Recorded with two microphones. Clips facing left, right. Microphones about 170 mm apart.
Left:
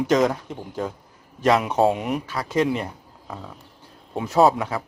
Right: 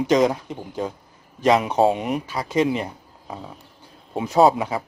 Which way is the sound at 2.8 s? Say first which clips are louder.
Right 1 dB; 15° right (ahead or behind).